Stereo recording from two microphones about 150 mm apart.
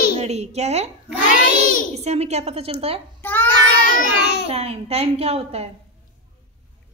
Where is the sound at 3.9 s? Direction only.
65° left (ahead or behind).